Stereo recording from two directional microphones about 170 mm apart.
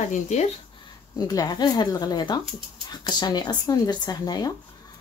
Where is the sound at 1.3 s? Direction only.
20° left (ahead or behind).